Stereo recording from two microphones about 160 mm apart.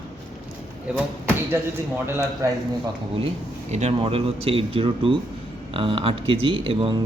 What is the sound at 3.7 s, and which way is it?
Speech, 45° right (ahead or behind).